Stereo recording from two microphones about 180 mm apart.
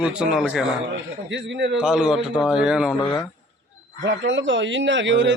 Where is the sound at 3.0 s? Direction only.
25° left (ahead or behind).